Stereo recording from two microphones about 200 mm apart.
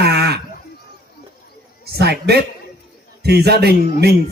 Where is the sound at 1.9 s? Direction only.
55° right (ahead or behind).